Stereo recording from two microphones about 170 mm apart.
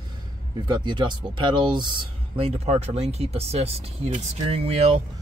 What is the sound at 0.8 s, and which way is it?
Speech, 25° right (ahead or behind).